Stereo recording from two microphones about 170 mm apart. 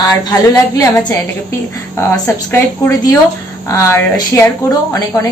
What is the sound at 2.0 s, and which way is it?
A woman's voice, 15° left (ahead or behind).